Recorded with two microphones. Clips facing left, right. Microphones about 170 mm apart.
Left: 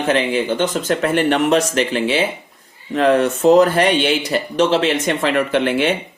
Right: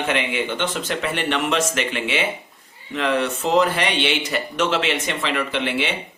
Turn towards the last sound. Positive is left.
turn(degrees=50)  # may be behind; listen again after turning